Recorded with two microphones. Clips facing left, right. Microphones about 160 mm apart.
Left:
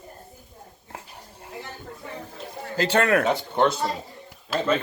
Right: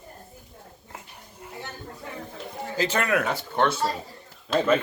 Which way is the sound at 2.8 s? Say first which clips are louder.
Left 4 dB; 30° left (ahead or behind).